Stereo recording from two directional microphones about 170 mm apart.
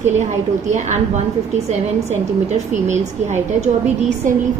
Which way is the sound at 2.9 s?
45° right (ahead or behind).